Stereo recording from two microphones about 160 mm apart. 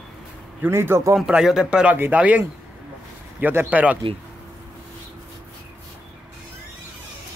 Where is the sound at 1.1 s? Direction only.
5° right (ahead or behind).